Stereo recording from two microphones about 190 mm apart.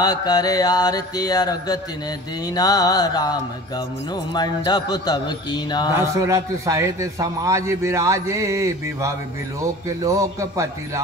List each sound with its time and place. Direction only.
0.0 s music: 20° left (ahead or behind)
5.9 s a man's voice: 15° right (ahead or behind)